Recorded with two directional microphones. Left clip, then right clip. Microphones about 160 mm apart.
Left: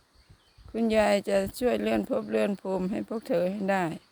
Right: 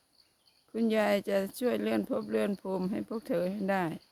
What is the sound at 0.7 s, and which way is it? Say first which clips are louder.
Speech: left 4 dB; centre (ahead or behind).